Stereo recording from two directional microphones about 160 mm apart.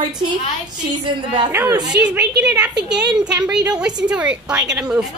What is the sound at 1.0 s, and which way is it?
Speech, 30° right (ahead or behind).